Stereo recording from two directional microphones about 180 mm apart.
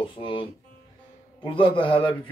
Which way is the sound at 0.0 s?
30° left (ahead or behind).